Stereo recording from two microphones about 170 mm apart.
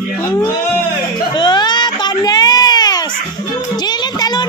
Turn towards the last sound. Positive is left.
turn(degrees=25)  # may be behind; listen again after turning